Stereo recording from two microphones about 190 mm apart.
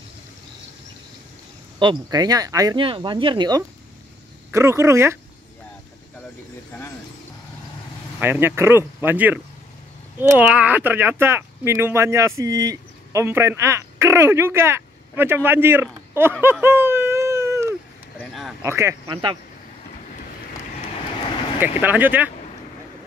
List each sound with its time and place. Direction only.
1.8 s speech: 20° right (ahead or behind)
8.2 s speech: 10° right (ahead or behind)
16.6 s a sound: 10° right (ahead or behind)
18.2 s a sound: centre (ahead or behind)
18.6 s speech: 15° right (ahead or behind)
21.5 s speech: 10° right (ahead or behind)